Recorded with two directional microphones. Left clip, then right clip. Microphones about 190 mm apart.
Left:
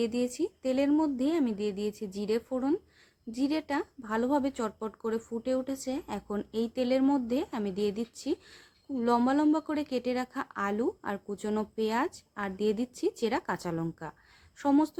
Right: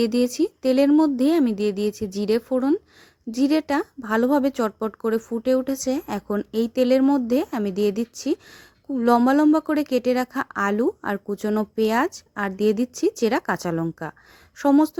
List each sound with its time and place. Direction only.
0.0 s speech: 45° right (ahead or behind)